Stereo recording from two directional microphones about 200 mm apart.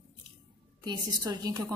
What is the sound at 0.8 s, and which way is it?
Speech, 20° right (ahead or behind).